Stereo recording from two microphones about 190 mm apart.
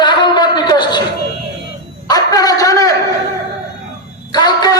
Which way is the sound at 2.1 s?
20° left (ahead or behind).